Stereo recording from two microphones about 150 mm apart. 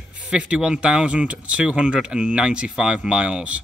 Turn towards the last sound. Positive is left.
turn(degrees=-10)  # may be behind; listen again after turning